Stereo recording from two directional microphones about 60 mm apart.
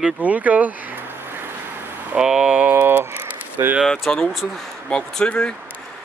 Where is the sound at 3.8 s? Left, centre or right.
Centre.